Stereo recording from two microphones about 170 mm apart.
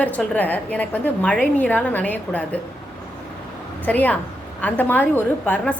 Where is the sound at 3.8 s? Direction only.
10° left (ahead or behind).